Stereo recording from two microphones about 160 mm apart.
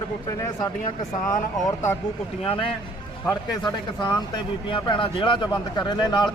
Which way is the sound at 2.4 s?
35° left (ahead or behind).